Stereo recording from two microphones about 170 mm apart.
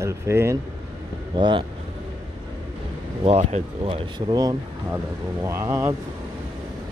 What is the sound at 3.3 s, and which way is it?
Speech, 40° right (ahead or behind).